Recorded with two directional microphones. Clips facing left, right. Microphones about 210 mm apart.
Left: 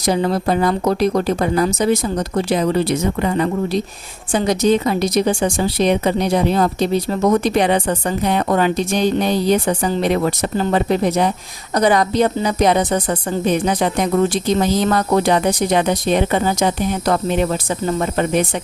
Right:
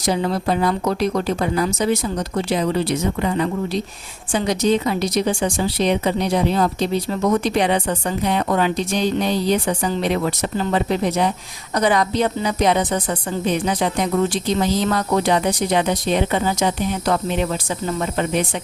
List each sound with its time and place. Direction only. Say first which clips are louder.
0.0 s a woman's voice: left 3 dB; 45° left (ahead or behind)